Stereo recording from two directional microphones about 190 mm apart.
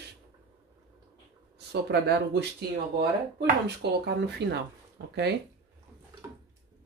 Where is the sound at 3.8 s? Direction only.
65° right (ahead or behind).